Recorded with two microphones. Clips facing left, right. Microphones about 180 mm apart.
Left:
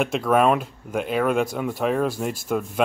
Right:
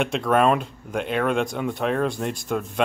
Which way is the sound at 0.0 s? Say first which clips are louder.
Left 1 dB; centre (ahead or behind).